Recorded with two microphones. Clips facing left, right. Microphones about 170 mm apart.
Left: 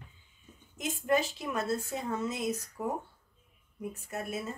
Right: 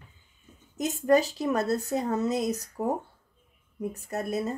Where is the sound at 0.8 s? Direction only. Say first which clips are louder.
Right 7 dB; 40° right (ahead or behind).